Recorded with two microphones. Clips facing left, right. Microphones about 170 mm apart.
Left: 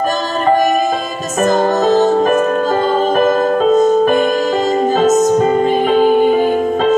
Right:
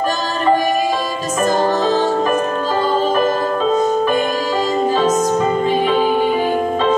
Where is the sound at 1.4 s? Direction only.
50° left (ahead or behind).